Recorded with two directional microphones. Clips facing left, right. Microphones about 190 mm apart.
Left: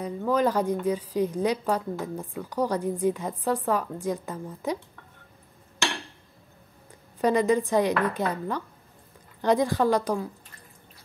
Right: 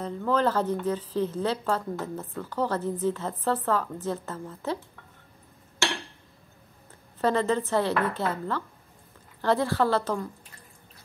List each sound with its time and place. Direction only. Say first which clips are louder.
0.0 s speech: left 1 dB; 10° left (ahead or behind)
7.2 s speech: left 3 dB; 15° left (ahead or behind)